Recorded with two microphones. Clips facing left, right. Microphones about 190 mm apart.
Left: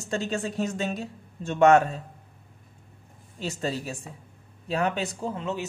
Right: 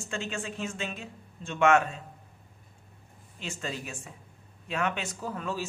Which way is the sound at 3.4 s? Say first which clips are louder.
Left 6 dB; 35° left (ahead or behind).